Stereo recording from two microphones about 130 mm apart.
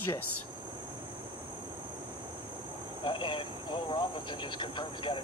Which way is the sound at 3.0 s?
40° left (ahead or behind).